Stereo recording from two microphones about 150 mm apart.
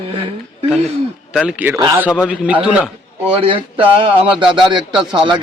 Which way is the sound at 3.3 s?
40° right (ahead or behind).